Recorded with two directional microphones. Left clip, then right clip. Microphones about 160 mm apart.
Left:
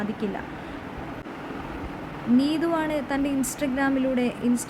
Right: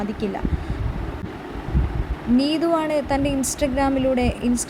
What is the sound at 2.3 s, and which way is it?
A woman's voice, 15° right (ahead or behind).